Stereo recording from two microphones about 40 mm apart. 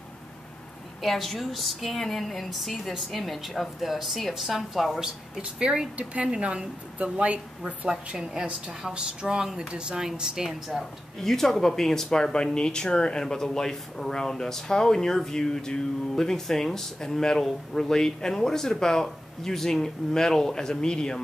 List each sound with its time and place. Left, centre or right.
1.0 s a woman's voice: centre
5.4 s a woman's voice: centre
8.3 s a woman's voice: centre
10.8 s speech: centre